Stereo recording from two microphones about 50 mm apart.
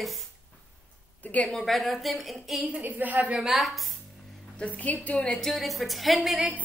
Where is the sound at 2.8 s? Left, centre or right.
Right.